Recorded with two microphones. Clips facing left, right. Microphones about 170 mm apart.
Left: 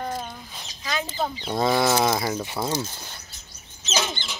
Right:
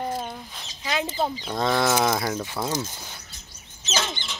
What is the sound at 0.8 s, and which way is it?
Chicken, 25° right (ahead or behind).